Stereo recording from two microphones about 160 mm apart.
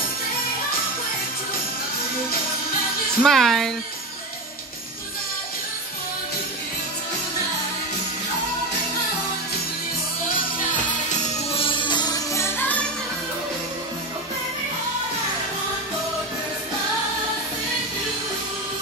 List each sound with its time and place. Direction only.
3.2 s a woman's voice: centre (ahead or behind)
11.5 s music: 35° left (ahead or behind); by 12.8 s 10° left (ahead or behind)